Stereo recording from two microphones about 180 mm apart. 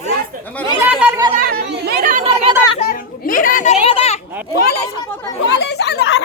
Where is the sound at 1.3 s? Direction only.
55° right (ahead or behind).